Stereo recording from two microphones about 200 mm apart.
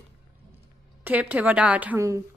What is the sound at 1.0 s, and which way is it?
A woman's voice, 10° right (ahead or behind).